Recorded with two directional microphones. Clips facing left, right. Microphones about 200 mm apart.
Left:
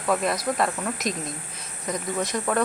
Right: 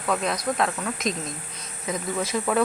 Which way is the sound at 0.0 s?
Centre (ahead or behind).